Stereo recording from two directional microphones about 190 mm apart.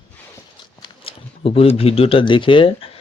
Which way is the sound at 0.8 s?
30° left (ahead or behind).